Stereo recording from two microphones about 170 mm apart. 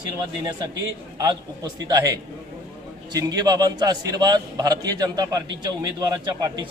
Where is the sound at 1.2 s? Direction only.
25° right (ahead or behind).